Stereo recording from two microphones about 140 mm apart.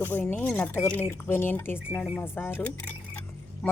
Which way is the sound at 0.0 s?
15° left (ahead or behind).